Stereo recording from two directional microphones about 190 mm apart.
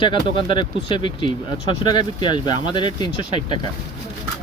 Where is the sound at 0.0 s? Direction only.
25° left (ahead or behind).